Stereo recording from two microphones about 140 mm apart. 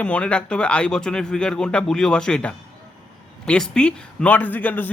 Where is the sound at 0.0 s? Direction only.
10° left (ahead or behind).